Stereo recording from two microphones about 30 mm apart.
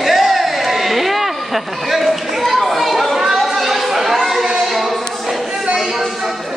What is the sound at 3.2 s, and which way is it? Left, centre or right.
Children playing, centre.